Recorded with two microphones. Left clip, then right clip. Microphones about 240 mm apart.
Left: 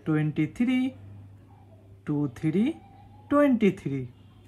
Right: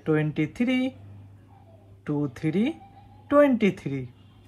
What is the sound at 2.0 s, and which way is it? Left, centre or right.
Speech, centre.